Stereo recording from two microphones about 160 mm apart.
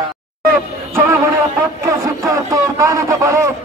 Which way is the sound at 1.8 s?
20° right (ahead or behind).